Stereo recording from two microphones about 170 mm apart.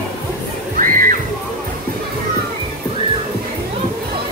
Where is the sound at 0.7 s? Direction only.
50° right (ahead or behind).